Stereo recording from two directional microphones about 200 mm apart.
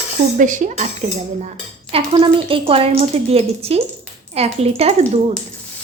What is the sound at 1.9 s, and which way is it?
A woman's voice, 25° right (ahead or behind).